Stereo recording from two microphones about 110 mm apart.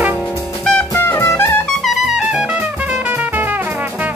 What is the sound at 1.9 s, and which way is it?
Music, 5° right (ahead or behind).